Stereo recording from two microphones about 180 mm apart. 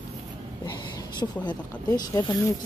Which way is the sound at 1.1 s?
25° left (ahead or behind).